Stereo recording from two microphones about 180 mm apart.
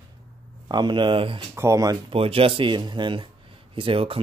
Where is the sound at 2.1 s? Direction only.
30° right (ahead or behind).